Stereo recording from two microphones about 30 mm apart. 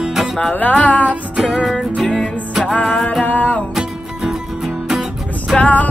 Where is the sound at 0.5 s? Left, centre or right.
Left.